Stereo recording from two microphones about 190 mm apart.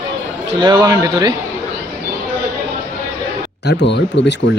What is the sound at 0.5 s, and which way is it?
Speech, 20° right (ahead or behind).